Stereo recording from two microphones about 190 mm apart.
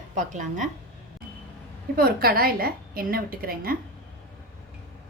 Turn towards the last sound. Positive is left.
turn(degrees=-50)  # may be behind; listen again after turning